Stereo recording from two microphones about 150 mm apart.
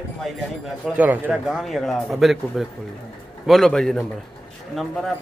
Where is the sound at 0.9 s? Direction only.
10° right (ahead or behind).